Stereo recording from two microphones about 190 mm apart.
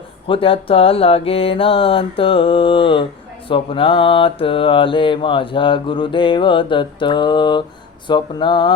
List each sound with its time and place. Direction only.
0.3 s mantra: 30° left (ahead or behind)